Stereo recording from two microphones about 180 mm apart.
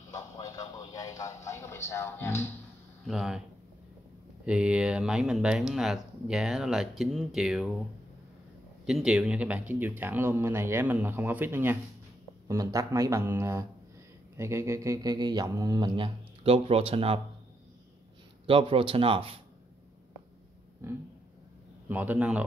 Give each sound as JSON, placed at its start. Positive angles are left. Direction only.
{"t": 0.1, "sound": "a sound", "side_deg": 20}
{"t": 3.1, "sound": "speech", "side_deg": 0}
{"t": 4.5, "sound": "speech", "side_deg": -5}
{"t": 8.8, "sound": "speech", "side_deg": -5}
{"t": 18.5, "sound": "speech", "side_deg": -30}
{"t": 20.8, "sound": "speech", "side_deg": -15}